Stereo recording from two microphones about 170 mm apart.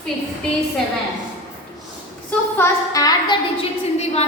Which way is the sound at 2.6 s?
20° left (ahead or behind).